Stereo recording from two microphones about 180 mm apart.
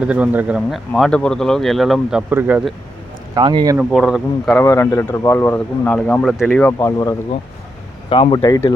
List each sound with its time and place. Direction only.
0.0 s speech: 5° right (ahead or behind)
3.3 s speech: 25° right (ahead or behind)
3.8 s speech: 5° right (ahead or behind)
4.5 s speech: 15° left (ahead or behind)
6.7 s speech: 20° left (ahead or behind)